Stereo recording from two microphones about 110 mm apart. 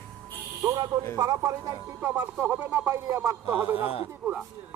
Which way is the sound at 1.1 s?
30° right (ahead or behind).